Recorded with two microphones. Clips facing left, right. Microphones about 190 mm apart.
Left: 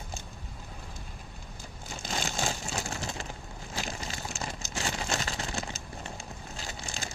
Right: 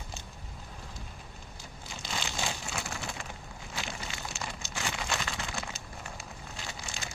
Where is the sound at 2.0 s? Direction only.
45° left (ahead or behind).